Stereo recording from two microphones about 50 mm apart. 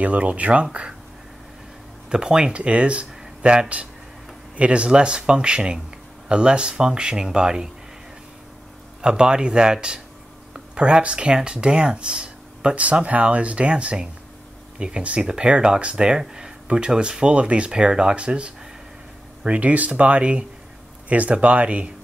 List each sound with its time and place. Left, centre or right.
0.0 s speech: right
2.0 s speech: centre
9.0 s speech: centre